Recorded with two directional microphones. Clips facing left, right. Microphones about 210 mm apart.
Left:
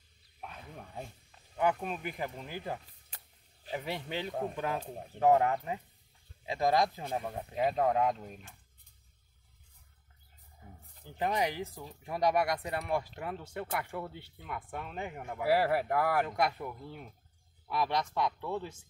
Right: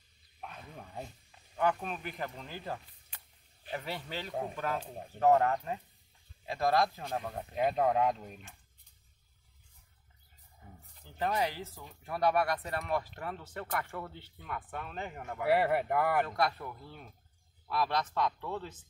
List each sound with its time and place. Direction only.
0.4 s wild animals: 5° left (ahead or behind)
1.6 s speech: 15° left (ahead or behind)
4.3 s speech: 5° right (ahead or behind)
4.6 s speech: 15° left (ahead or behind)
7.2 s speech: centre (ahead or behind)
11.1 s speech: 15° left (ahead or behind)
16.3 s speech: 15° left (ahead or behind)